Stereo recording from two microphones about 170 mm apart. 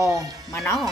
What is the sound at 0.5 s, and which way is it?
Speech, 15° left (ahead or behind).